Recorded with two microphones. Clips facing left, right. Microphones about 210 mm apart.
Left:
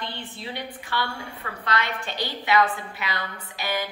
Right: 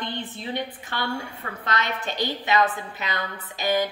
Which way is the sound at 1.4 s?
35° right (ahead or behind).